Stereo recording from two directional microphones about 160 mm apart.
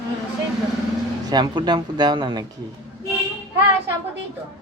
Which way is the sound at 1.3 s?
25° right (ahead or behind).